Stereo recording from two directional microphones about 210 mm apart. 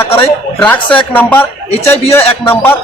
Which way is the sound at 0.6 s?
5° left (ahead or behind).